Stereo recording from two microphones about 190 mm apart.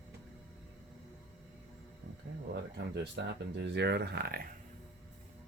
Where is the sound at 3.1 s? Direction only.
65° right (ahead or behind).